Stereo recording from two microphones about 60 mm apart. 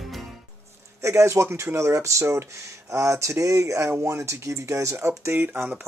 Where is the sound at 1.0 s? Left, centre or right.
Right.